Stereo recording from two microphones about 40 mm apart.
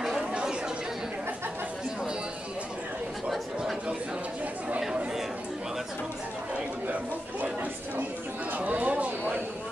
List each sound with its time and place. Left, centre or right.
0.3 s chatter: right
4.6 s chatter: right
8.5 s a sound: right